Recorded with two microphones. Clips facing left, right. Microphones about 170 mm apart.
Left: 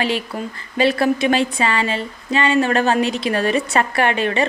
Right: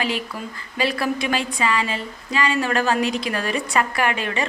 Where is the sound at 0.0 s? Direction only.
30° left (ahead or behind).